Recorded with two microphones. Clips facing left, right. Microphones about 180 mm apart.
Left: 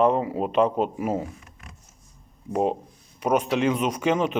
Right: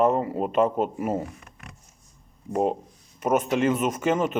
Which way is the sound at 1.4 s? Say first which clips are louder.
Right 2 dB; 65° right (ahead or behind).